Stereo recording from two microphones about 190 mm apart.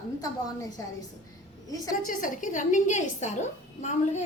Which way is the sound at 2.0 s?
45° left (ahead or behind).